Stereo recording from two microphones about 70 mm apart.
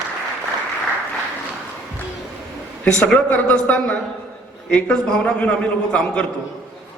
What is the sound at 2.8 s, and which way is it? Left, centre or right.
A man's voice, centre.